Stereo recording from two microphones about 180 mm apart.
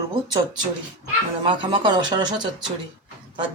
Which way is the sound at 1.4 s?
25° right (ahead or behind).